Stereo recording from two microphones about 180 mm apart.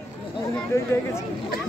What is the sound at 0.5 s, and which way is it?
Speech, 15° left (ahead or behind).